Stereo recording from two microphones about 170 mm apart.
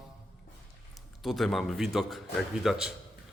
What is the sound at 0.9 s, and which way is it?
A man's voice, centre (ahead or behind).